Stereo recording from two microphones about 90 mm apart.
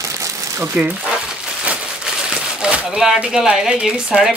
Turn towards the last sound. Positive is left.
turn(degrees=-10)  # may be behind; listen again after turning